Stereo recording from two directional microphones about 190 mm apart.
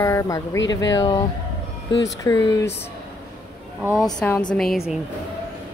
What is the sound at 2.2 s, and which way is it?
Speech, 20° left (ahead or behind).